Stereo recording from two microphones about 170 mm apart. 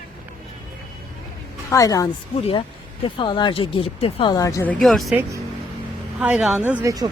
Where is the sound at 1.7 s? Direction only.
20° left (ahead or behind).